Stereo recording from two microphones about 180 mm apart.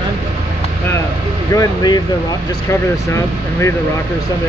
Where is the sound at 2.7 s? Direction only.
15° left (ahead or behind).